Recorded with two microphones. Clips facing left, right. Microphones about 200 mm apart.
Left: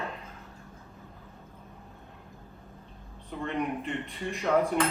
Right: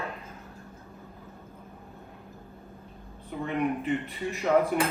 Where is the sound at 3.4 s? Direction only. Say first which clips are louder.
Right 3 dB; 5° right (ahead or behind).